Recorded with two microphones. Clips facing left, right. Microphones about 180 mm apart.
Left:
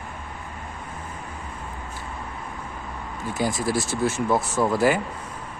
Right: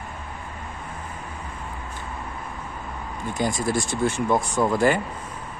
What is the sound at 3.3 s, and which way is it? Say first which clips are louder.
Speech: even; 5° left (ahead or behind).